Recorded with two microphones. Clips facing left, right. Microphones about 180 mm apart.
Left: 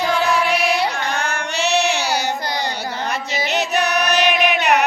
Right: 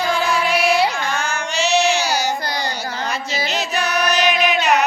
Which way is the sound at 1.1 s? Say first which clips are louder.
Even; 60° left (ahead or behind).